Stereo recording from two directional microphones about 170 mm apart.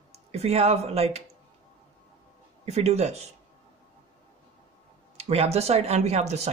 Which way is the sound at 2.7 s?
40° right (ahead or behind).